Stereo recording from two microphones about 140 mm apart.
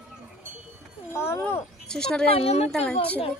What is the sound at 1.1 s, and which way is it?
Speech, 20° left (ahead or behind).